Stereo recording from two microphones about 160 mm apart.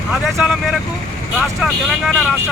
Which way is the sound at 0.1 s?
Centre (ahead or behind).